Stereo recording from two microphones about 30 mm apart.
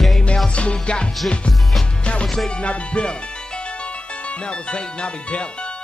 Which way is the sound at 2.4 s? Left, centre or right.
Left.